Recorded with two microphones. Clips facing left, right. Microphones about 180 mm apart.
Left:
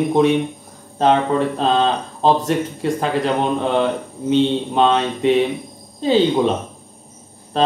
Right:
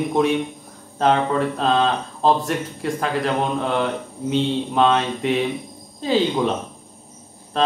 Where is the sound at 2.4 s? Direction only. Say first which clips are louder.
Left 5 dB; 25° left (ahead or behind).